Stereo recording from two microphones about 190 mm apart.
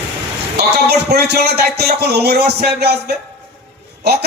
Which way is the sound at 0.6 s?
55° right (ahead or behind).